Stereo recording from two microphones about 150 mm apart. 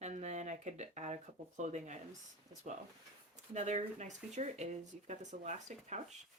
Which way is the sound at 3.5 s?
50° right (ahead or behind).